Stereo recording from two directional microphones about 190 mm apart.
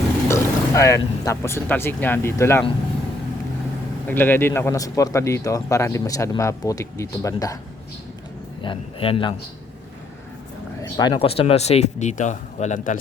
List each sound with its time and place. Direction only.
0.3 s speech: 15° left (ahead or behind)
4.0 s a man's voice: 10° left (ahead or behind)
8.6 s a man's voice: 30° left (ahead or behind)
10.9 s speech: 20° left (ahead or behind); by 13.0 s 40° left (ahead or behind)